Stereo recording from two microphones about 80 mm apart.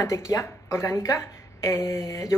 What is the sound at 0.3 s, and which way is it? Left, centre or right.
A woman's voice, left.